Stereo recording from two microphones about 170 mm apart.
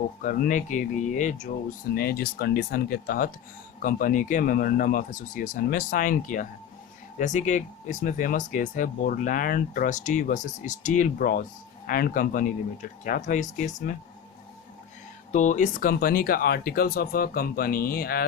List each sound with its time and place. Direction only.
0.2 s speech: 50° left (ahead or behind)
2.0 s speech: 65° left (ahead or behind); by 13.9 s 45° left (ahead or behind)
15.3 s speech: 45° left (ahead or behind); by 18.3 s 60° left (ahead or behind)